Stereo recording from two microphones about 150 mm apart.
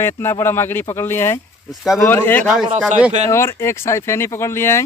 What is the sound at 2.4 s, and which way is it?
Speech, 5° right (ahead or behind).